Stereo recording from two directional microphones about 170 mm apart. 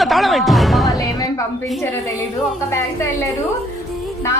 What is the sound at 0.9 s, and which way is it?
A woman's voice, 20° left (ahead or behind).